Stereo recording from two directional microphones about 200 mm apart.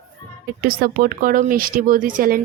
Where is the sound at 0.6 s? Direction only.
45° right (ahead or behind).